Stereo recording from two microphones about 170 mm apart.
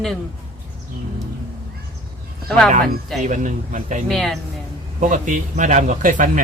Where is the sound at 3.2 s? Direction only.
45° right (ahead or behind).